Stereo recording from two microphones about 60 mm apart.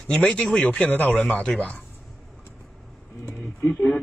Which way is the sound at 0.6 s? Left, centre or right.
Left.